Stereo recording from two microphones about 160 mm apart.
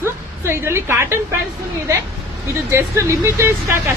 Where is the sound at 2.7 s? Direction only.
15° right (ahead or behind).